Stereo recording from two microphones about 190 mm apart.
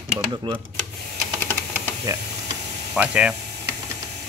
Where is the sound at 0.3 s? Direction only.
25° right (ahead or behind).